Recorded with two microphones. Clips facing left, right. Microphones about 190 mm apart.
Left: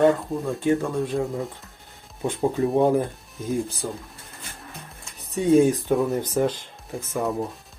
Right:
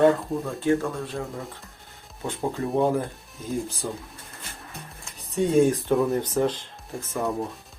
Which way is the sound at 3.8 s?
5° left (ahead or behind).